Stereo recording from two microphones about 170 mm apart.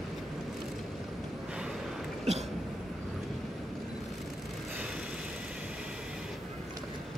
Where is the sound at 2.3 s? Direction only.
40° right (ahead or behind).